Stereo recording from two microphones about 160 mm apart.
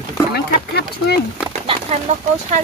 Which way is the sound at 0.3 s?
90° left.